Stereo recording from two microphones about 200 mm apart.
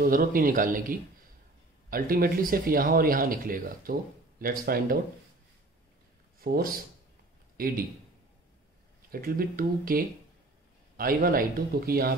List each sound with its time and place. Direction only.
0.0 s speech: 45° right (ahead or behind)
6.4 s a man's voice: 45° right (ahead or behind)
9.1 s speech: 50° right (ahead or behind)